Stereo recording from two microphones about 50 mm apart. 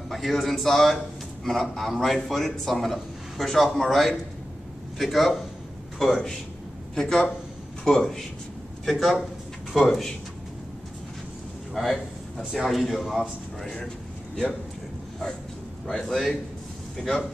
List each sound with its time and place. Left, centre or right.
0.1 s a man's voice: centre
11.7 s a man's voice: centre
16.0 s a man's voice: centre